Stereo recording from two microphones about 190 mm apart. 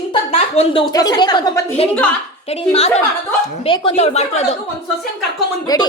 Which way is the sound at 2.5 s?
35° left (ahead or behind).